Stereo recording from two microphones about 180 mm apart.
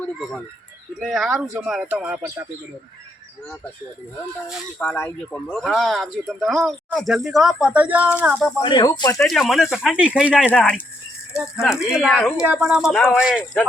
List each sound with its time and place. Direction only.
0.9 s speech: centre (ahead or behind)
4.4 s speech: 10° left (ahead or behind); by 8.4 s 5° right (ahead or behind)
8.6 s speech: 25° left (ahead or behind)
9.1 s speech: centre (ahead or behind)